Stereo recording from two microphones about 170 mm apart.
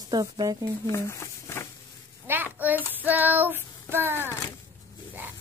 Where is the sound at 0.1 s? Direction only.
20° right (ahead or behind).